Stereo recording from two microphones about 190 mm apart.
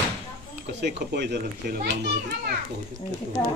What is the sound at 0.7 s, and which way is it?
A child's voice, 65° right (ahead or behind).